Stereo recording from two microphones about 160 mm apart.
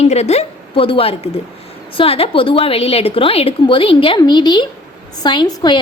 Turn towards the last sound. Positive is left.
turn(degrees=30)  # may be behind; listen again after turning